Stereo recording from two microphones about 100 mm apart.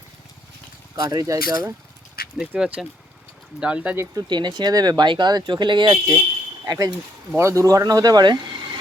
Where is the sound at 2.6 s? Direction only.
10° right (ahead or behind).